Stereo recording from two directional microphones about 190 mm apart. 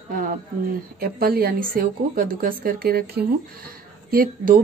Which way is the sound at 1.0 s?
50° right (ahead or behind).